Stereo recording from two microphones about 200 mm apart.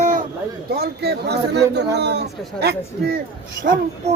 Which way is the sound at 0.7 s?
50° right (ahead or behind).